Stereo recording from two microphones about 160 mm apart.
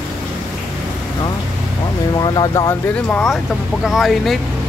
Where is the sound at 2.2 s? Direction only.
25° left (ahead or behind).